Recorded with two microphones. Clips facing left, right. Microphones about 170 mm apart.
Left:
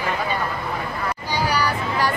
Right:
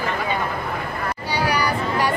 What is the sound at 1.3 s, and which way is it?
Vehicle, 10° right (ahead or behind).